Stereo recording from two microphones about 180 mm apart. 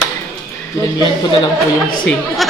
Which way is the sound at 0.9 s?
25° left (ahead or behind).